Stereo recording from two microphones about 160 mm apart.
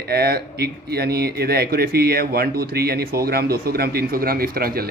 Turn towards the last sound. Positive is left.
turn(degrees=-70)  # may be behind; listen again after turning